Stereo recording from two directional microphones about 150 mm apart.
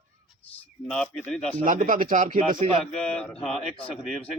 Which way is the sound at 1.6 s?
60° right (ahead or behind).